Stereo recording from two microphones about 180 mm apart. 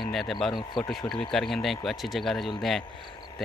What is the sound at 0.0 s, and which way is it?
Speech, centre (ahead or behind).